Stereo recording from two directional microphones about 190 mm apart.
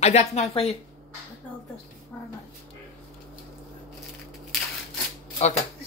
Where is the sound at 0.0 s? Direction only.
35° left (ahead or behind).